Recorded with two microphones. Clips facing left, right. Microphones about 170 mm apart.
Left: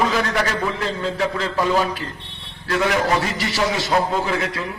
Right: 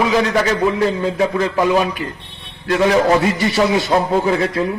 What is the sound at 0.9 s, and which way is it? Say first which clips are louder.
A man's voice: right 5 dB; 20° right (ahead or behind).